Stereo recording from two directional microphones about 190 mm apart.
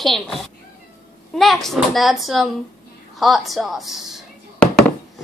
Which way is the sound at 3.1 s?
Centre (ahead or behind).